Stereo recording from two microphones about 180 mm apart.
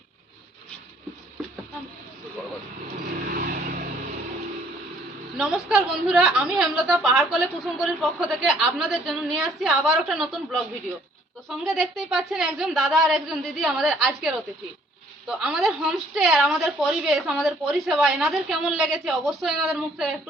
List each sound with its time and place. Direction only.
3.2 s vehicle: 50° right (ahead or behind)
5.4 s a woman's voice: 5° right (ahead or behind)